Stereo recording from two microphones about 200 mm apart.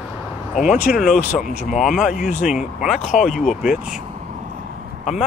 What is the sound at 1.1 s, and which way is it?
Speech, 35° left (ahead or behind).